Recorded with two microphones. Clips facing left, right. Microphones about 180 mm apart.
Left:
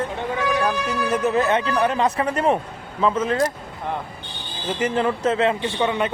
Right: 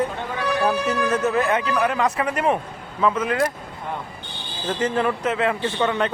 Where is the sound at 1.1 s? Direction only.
20° left (ahead or behind).